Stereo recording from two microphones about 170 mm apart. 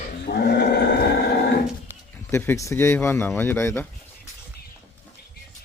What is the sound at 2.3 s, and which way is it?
Speech, 15° left (ahead or behind).